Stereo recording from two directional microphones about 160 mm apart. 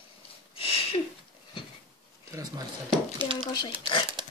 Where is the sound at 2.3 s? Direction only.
20° right (ahead or behind).